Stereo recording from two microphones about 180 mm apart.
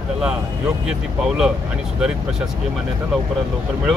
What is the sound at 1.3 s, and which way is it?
Speech, 5° right (ahead or behind).